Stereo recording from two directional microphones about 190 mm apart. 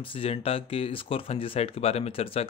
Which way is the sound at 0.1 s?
30° left (ahead or behind).